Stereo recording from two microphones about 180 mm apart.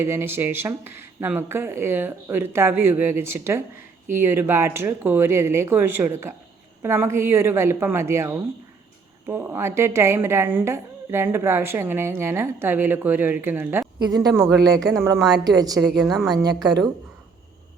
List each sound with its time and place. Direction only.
0.0 s a woman's voice: 15° right (ahead or behind)
15.9 s a woman's voice: centre (ahead or behind)